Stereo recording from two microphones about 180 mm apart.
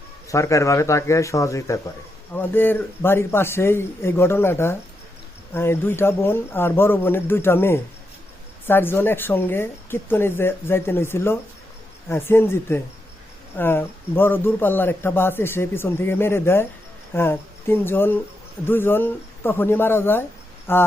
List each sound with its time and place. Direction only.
0.3 s speech: 15° left (ahead or behind)